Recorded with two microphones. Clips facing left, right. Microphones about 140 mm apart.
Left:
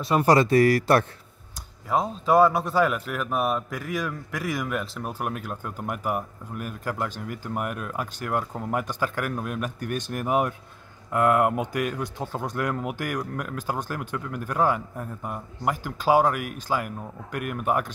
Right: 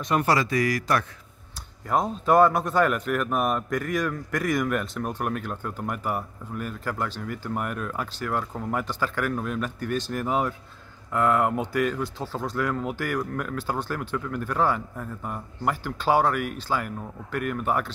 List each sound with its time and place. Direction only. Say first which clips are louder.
0.1 s speech: left 4 dB; 30° left (ahead or behind)
1.9 s speech: even; centre (ahead or behind)